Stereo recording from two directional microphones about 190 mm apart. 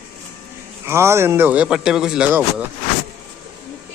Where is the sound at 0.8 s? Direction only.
15° right (ahead or behind).